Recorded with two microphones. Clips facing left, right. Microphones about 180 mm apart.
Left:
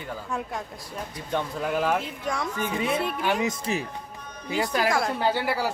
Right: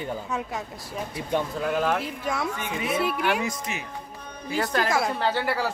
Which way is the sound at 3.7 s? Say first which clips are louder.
Left 6 dB; 35° left (ahead or behind).